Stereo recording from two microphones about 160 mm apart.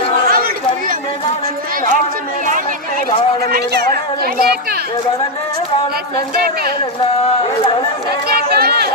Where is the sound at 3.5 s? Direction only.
80° right.